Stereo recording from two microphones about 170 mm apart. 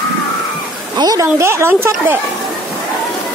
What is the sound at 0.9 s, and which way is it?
Speech, 20° right (ahead or behind).